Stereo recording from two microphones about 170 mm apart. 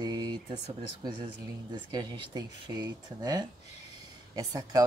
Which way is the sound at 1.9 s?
25° right (ahead or behind).